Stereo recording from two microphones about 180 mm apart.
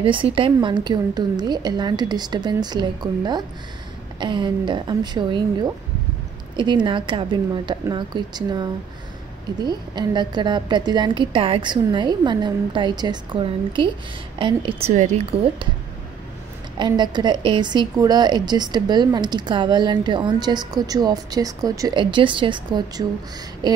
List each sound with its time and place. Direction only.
0.0 s a woman's voice: 30° right (ahead or behind)
6.5 s a woman's voice: 25° right (ahead or behind)
9.7 s a woman's voice: 25° right (ahead or behind)
16.7 s a woman's voice: 25° right (ahead or behind)